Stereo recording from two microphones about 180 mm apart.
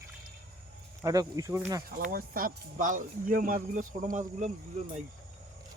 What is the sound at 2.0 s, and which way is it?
Speech, 50° right (ahead or behind).